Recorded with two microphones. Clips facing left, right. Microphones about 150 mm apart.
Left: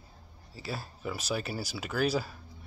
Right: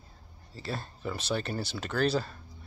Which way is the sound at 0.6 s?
5° left (ahead or behind).